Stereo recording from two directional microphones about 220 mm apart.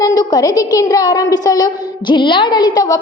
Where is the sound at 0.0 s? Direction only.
20° left (ahead or behind).